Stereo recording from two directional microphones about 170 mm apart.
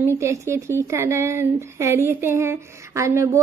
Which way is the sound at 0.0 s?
15° right (ahead or behind).